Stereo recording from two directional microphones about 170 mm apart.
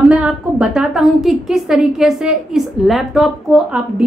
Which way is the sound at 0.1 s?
5° right (ahead or behind).